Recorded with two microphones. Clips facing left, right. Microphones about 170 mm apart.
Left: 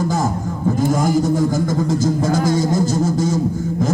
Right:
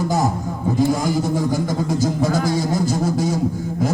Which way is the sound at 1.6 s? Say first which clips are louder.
Left 2 dB; 45° left (ahead or behind).